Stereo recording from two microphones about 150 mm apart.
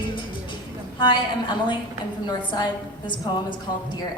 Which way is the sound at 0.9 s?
30° left (ahead or behind).